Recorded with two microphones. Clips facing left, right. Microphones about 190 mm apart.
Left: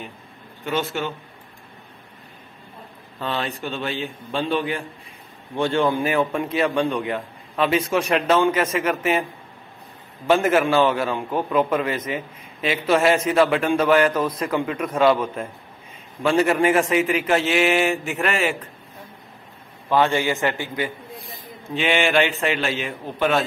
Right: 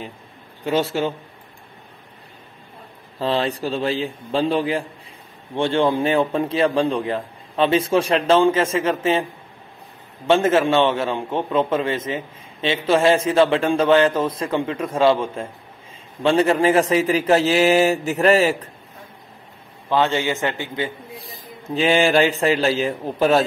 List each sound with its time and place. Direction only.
0.7 s a man's voice: 30° right (ahead or behind)
3.2 s a man's voice: 30° right (ahead or behind)
10.2 s a man's voice: 25° right (ahead or behind)
19.9 s a man's voice: 20° right (ahead or behind)
21.2 s a man's voice: 35° right (ahead or behind)